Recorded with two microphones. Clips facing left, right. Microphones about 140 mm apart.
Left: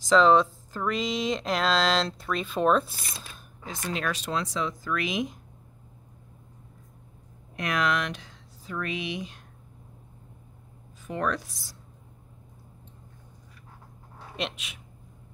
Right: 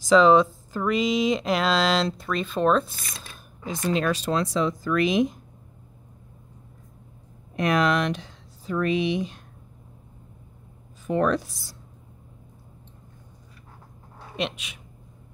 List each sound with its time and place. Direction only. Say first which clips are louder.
0.1 s speech: right 3 dB; 5° right (ahead or behind)
3.8 s speech: right 7 dB; 30° right (ahead or behind)
7.5 s speech: right 5 dB; 30° right (ahead or behind)
11.1 s speech: right 7 dB; 30° right (ahead or behind)
14.3 s speech: right 4 dB; centre (ahead or behind)